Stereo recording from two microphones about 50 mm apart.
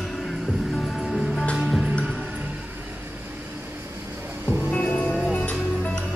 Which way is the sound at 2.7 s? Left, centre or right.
Right.